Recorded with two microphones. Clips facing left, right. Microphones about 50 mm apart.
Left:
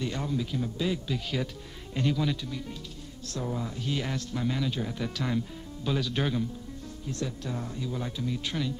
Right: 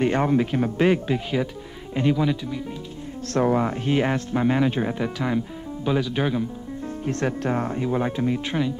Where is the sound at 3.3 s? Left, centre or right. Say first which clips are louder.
Right 13 dB; right.